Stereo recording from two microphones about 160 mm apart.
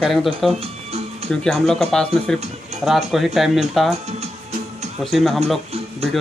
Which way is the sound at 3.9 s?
40° right (ahead or behind).